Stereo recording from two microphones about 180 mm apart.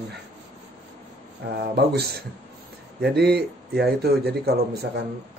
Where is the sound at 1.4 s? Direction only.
60° right (ahead or behind).